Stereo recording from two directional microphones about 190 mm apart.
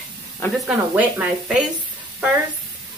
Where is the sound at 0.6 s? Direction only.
5° right (ahead or behind).